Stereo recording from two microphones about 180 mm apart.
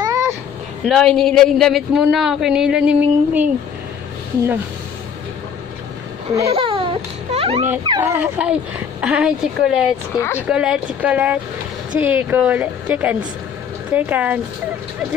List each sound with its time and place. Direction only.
0.0 s a sound: 15° right (ahead or behind)
0.8 s speech: 5° left (ahead or behind)
6.5 s music: 30° right (ahead or behind)
8.0 s speech: 10° right (ahead or behind)
10.1 s speech: 15° left (ahead or behind)
10.5 s speech: 5° right (ahead or behind)